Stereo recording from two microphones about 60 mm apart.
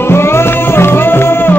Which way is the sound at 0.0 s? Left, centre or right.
Left.